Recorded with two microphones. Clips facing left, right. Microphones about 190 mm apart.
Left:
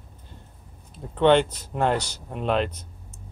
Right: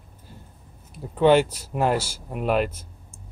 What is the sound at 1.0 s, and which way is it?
Speech, 5° right (ahead or behind).